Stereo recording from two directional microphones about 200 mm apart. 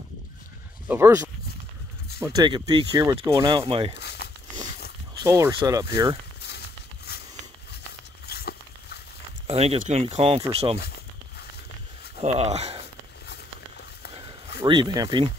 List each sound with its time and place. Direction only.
0.8 s speech: 10° right (ahead or behind); by 4.0 s 25° right (ahead or behind)
4.0 s crumpling: 55° left (ahead or behind)
5.2 s speech: 15° right (ahead or behind)
7.1 s a sound: 55° left (ahead or behind)
8.3 s a sound: 50° left (ahead or behind)
9.5 s speech: 30° right (ahead or behind)
12.2 s speech: 35° right (ahead or behind)
14.6 s speech: 25° right (ahead or behind)